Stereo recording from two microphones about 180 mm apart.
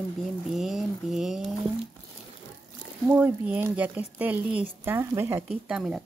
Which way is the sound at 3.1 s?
10° right (ahead or behind).